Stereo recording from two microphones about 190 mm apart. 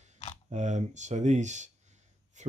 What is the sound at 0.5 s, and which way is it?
Speech, 40° right (ahead or behind).